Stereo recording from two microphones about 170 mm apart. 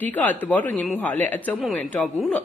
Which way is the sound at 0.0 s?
10° left (ahead or behind).